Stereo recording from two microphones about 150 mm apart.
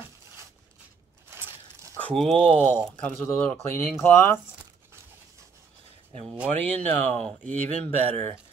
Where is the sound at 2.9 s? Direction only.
10° left (ahead or behind).